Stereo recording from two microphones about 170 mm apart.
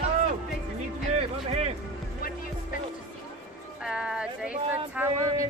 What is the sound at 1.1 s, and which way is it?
Music, 40° right (ahead or behind).